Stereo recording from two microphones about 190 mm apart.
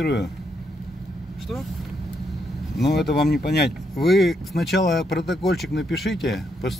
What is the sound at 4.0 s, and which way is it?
Speech, centre (ahead or behind).